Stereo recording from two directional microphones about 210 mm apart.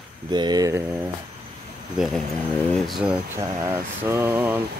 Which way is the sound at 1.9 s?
Centre (ahead or behind).